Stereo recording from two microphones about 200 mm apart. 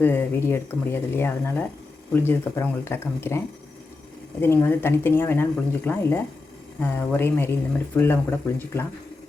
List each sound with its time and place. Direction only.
0.0 s a woman's voice: 10° left (ahead or behind)